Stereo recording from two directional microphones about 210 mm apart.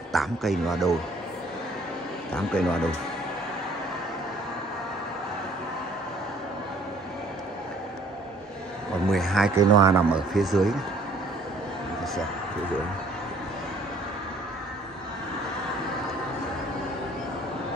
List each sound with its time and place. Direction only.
0.1 s a man's voice: centre (ahead or behind)
2.3 s a man's voice: 5° left (ahead or behind)
9.1 s a man's voice: centre (ahead or behind)
9.6 s speech: 15° right (ahead or behind)
10.3 s a man's voice: centre (ahead or behind)